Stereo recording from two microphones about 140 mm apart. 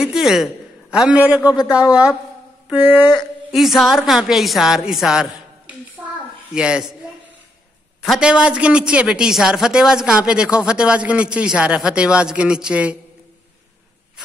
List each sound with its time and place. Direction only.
0.0 s a man's voice: 5° right (ahead or behind)
3.2 s a woman's voice: centre (ahead or behind)
6.5 s a woman's voice: 5° right (ahead or behind)
8.0 s a woman's voice: 5° right (ahead or behind)